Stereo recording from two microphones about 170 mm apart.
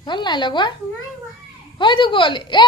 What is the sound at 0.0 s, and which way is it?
Speech, 25° left (ahead or behind).